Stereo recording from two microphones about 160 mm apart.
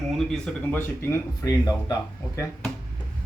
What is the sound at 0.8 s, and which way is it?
Speech, 20° left (ahead or behind).